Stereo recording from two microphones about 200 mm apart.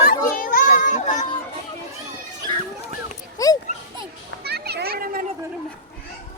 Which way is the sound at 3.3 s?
15° left (ahead or behind).